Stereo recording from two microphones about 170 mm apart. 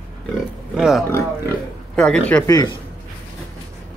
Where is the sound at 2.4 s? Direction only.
20° left (ahead or behind).